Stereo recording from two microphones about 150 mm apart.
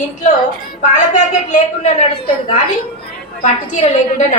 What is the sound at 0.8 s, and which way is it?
A woman's voice, 55° left (ahead or behind).